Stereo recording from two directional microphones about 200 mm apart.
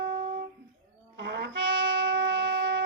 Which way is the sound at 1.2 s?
60° right (ahead or behind).